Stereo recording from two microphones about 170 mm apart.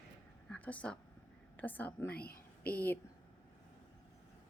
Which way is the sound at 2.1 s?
65° left (ahead or behind).